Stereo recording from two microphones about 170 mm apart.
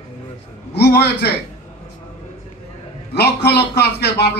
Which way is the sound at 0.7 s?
75° left (ahead or behind).